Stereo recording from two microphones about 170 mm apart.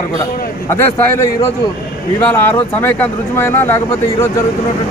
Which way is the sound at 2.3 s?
10° left (ahead or behind).